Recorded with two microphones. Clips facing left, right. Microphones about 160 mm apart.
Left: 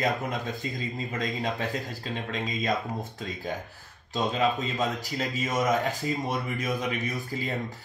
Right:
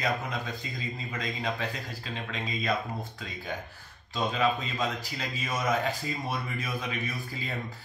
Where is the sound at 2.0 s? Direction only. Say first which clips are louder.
Left 4 dB; 40° left (ahead or behind).